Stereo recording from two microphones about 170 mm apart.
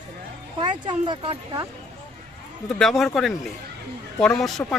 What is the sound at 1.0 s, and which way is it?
Speech, 30° right (ahead or behind).